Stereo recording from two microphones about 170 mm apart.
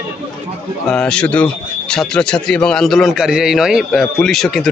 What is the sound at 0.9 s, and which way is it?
A man's voice, 5° left (ahead or behind).